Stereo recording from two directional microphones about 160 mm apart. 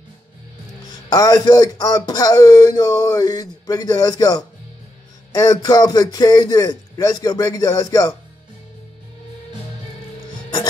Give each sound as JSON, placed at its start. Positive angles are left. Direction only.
{"t": 1.1, "sound": "speech", "side_deg": 25}